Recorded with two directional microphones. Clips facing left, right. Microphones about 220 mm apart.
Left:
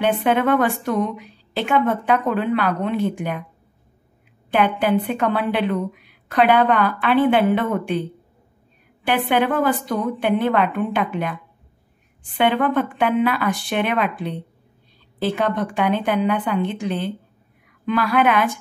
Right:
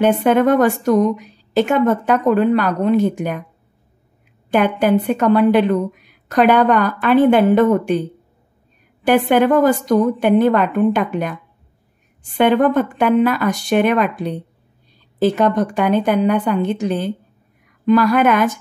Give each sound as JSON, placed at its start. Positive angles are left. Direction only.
{"t": 0.0, "sound": "a woman's voice", "side_deg": -45}
{"t": 4.5, "sound": "a woman's voice", "side_deg": -45}
{"t": 9.0, "sound": "a woman's voice", "side_deg": -45}